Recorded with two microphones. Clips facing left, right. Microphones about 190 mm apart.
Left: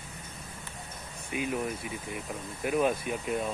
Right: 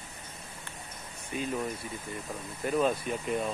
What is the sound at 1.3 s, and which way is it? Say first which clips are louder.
Speech: left 1 dB; 10° left (ahead or behind).